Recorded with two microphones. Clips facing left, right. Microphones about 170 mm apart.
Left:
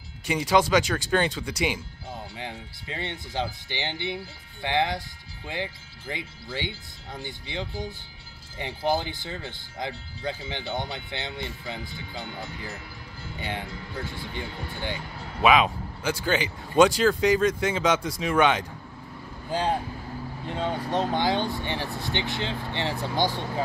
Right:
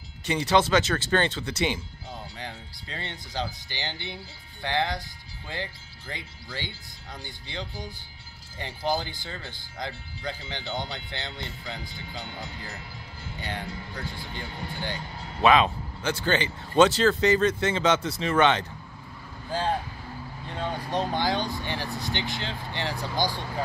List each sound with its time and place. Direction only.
0.3 s speech: 10° left (ahead or behind)
13.4 s speech: 20° left (ahead or behind)
15.4 s speech: 10° left (ahead or behind)
20.4 s speech: 20° left (ahead or behind)